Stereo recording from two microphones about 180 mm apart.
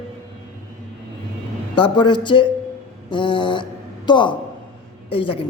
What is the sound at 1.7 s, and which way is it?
A man's voice, 25° left (ahead or behind).